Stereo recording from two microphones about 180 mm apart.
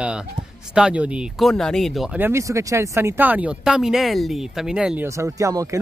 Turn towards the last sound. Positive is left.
turn(degrees=-15)  # may be behind; listen again after turning